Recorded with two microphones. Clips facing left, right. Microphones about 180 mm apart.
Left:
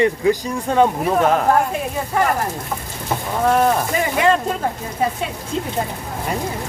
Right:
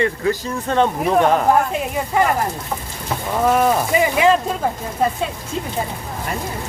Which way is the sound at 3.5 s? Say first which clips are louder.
Even; 5° right (ahead or behind).